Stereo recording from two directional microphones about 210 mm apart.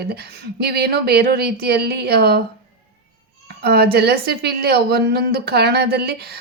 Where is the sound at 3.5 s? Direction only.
50° right (ahead or behind).